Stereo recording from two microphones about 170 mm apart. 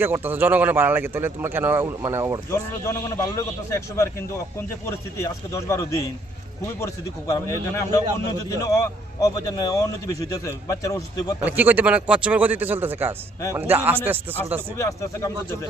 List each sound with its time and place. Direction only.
0.0 s a man's voice: 10° right (ahead or behind)
2.5 s a man's voice: 15° left (ahead or behind)
11.3 s a man's voice: 10° right (ahead or behind)
14.8 s a man's voice: 20° left (ahead or behind)